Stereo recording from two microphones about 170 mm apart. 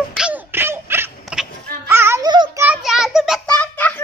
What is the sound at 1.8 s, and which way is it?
Music, 15° right (ahead or behind).